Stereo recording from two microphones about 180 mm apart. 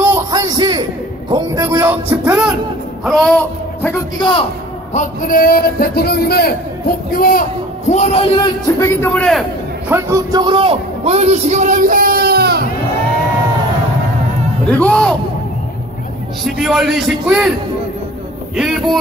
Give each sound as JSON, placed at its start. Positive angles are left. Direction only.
{"t": 0.0, "sound": "a sound", "side_deg": -20}
{"t": 1.3, "sound": "speech", "side_deg": -20}
{"t": 4.2, "sound": "a man's voice", "side_deg": 30}
{"t": 4.9, "sound": "a man's voice", "side_deg": 50}
{"t": 7.9, "sound": "a man's voice", "side_deg": 35}
{"t": 8.6, "sound": "speech", "side_deg": 15}
{"t": 9.8, "sound": "a man's voice", "side_deg": -15}
{"t": 14.7, "sound": "a man's voice", "side_deg": 5}
{"t": 16.4, "sound": "a man's voice", "side_deg": 0}
{"t": 18.6, "sound": "a man's voice", "side_deg": 0}